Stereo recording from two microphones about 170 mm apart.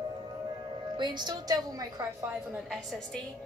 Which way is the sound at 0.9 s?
25° right (ahead or behind).